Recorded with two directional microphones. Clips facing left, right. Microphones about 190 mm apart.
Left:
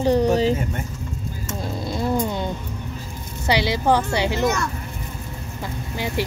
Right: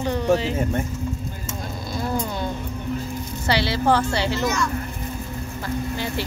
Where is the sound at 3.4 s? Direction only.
15° left (ahead or behind).